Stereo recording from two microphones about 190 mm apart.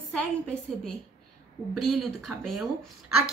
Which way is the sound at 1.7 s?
Centre (ahead or behind).